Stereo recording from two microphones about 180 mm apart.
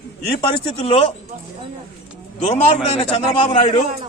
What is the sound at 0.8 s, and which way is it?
Speech, 35° left (ahead or behind).